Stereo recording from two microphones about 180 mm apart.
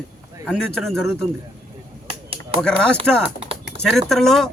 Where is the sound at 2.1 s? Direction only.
30° right (ahead or behind).